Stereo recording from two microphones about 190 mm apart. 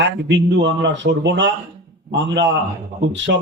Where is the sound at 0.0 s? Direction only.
70° right (ahead or behind).